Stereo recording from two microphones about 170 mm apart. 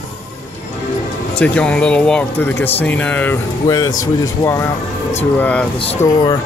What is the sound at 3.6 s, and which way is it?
Speech, 25° left (ahead or behind).